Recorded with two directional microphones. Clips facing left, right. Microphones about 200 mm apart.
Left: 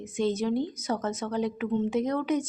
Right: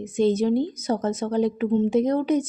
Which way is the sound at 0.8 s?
35° right (ahead or behind).